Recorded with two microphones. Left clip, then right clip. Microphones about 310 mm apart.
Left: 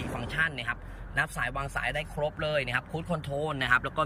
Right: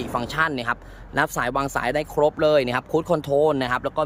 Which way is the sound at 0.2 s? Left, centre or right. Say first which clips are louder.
Right 7 dB; centre.